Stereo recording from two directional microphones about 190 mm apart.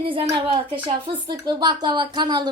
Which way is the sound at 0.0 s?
25° right (ahead or behind).